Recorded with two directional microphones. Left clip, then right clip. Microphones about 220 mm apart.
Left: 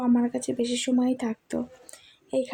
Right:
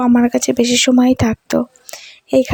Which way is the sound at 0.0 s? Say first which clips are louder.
Right 12 dB; 45° right (ahead or behind).